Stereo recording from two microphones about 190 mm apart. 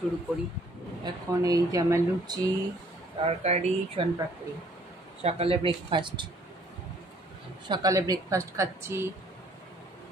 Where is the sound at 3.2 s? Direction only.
30° right (ahead or behind).